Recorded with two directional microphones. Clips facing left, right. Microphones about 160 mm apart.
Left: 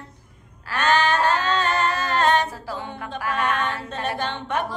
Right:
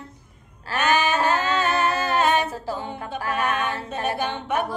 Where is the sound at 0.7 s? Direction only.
10° right (ahead or behind).